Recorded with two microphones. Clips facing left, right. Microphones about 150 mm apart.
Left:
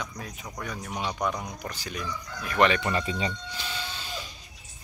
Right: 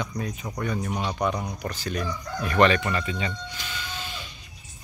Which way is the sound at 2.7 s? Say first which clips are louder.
Right 1 dB; 20° left (ahead or behind).